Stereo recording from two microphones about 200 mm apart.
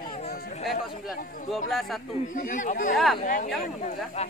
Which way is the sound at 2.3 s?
40° left (ahead or behind).